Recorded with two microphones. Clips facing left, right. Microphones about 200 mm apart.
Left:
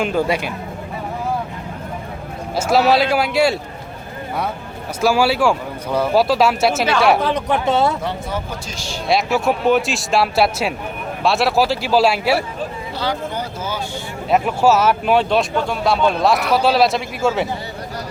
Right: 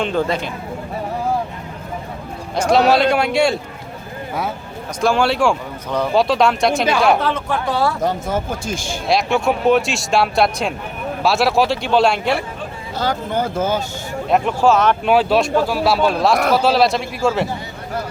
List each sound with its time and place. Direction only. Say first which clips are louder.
0.0 s speech: left 1 dB; 10° left (ahead or behind)
2.6 s speech: right 1 dB; 5° left (ahead or behind)
4.9 s speech: even; 5° left (ahead or behind)
7.3 s speech: left 2 dB; 15° left (ahead or behind)
8.0 s speech: right 4 dB; 50° right (ahead or behind)
9.0 s speech: even; centre (ahead or behind)
13.0 s speech: right 4 dB; 50° right (ahead or behind)
14.3 s speech: even; 5° left (ahead or behind)